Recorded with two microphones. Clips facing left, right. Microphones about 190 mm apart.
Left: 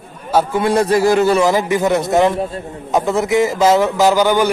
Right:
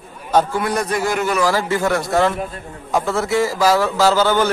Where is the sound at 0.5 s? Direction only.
25° left (ahead or behind).